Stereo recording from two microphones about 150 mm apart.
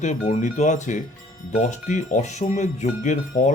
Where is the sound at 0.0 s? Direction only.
50° left (ahead or behind).